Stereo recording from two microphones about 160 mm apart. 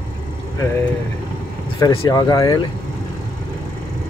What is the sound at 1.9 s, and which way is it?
Speech, 25° left (ahead or behind).